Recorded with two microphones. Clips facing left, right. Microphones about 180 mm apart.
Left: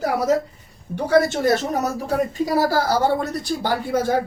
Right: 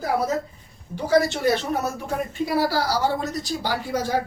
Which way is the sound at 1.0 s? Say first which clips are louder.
Left 3 dB; 55° left (ahead or behind).